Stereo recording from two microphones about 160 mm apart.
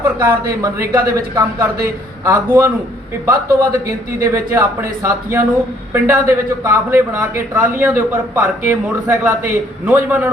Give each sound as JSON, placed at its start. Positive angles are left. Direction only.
{"t": 0.2, "sound": "speech", "side_deg": -20}